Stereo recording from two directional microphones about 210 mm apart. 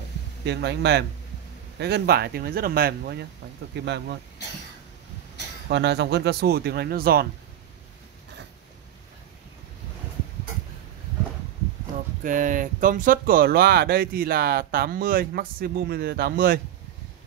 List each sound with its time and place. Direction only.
0.5 s speech: 55° right (ahead or behind)
5.7 s speech: 55° right (ahead or behind)
12.2 s speech: 40° right (ahead or behind)